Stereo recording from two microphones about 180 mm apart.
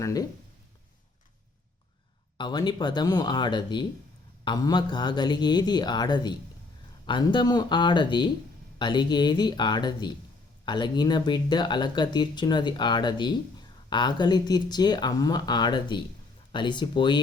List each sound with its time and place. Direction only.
0.0 s speech: 20° left (ahead or behind)
2.4 s speech: 25° left (ahead or behind)